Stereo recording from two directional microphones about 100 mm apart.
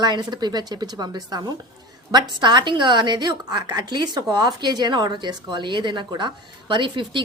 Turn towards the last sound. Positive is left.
turn(degrees=-55)  # may be behind; listen again after turning